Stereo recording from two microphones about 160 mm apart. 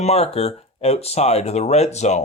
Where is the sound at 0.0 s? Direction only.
40° left (ahead or behind).